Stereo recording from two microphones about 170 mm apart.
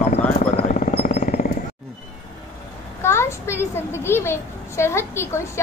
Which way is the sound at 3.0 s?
15° left (ahead or behind).